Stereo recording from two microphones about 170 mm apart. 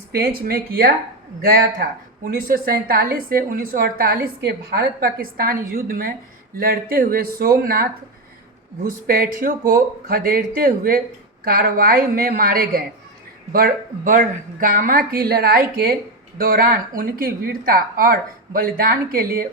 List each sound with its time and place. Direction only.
0.1 s a woman's voice: 65° right (ahead or behind)